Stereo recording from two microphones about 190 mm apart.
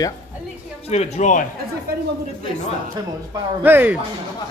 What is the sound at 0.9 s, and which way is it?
Speech, 35° left (ahead or behind).